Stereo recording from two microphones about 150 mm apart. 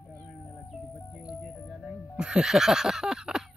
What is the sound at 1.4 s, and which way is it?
Music, 5° left (ahead or behind).